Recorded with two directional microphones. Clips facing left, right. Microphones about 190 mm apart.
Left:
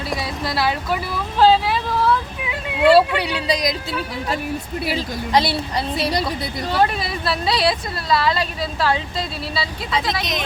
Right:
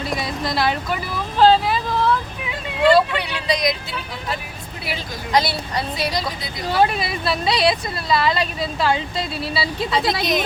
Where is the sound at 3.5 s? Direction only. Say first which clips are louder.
Right 1 dB; 35° left (ahead or behind).